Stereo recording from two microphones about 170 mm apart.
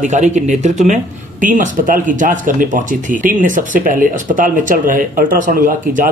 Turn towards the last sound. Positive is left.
turn(degrees=-55)  # may be behind; listen again after turning